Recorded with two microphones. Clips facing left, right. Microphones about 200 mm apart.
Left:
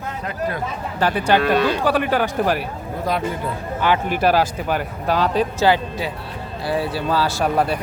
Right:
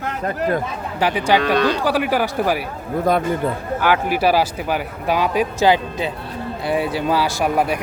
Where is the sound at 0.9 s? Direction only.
10° right (ahead or behind).